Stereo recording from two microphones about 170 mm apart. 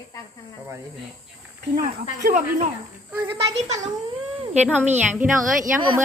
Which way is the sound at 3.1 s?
10° right (ahead or behind).